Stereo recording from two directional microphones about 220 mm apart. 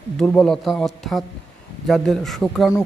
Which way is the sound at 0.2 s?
5° left (ahead or behind).